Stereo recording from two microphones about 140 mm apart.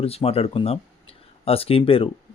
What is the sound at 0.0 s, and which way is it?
A man's voice, 45° left (ahead or behind).